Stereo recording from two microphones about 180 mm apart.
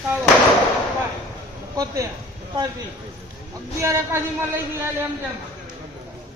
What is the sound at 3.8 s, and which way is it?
Speech, 15° right (ahead or behind).